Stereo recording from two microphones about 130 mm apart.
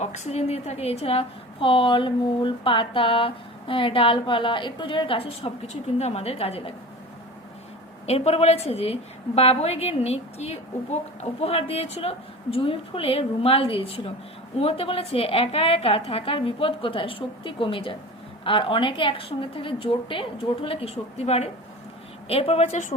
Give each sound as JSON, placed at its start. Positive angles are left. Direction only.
{"t": 0.0, "sound": "a woman's voice", "side_deg": 55}
{"t": 8.0, "sound": "a woman's voice", "side_deg": 55}